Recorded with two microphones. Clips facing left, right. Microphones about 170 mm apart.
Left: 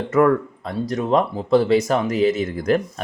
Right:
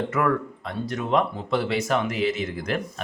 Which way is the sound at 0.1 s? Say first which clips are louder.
Left 7 dB; 40° left (ahead or behind).